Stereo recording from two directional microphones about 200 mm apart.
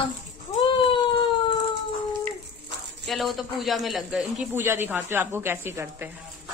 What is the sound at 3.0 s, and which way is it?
A man's voice, centre (ahead or behind).